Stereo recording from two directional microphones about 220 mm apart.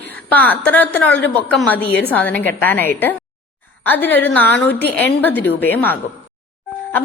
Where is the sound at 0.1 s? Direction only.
10° left (ahead or behind).